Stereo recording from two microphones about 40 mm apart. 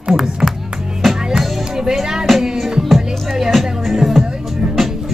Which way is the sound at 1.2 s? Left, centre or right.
Centre.